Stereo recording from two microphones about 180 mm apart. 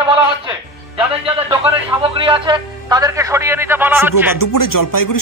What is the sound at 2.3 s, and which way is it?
A man's voice, 25° right (ahead or behind).